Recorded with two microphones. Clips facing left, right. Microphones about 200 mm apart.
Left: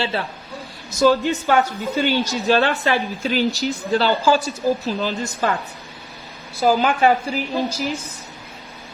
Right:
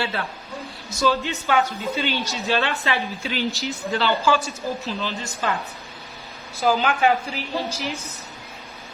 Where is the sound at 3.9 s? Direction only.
40° left (ahead or behind).